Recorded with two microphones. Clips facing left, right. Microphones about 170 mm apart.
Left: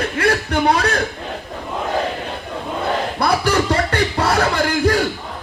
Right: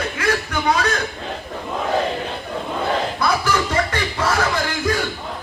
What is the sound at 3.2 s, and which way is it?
Music, 35° left (ahead or behind).